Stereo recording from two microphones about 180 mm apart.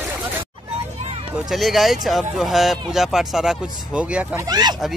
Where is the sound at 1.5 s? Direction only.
Centre (ahead or behind).